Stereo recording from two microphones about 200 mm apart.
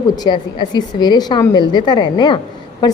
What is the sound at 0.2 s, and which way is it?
A woman's voice, 20° left (ahead or behind).